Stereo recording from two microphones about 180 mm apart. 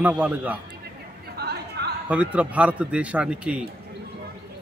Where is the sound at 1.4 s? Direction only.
65° right (ahead or behind).